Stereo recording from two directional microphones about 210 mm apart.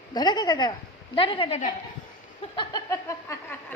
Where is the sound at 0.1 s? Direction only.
20° left (ahead or behind).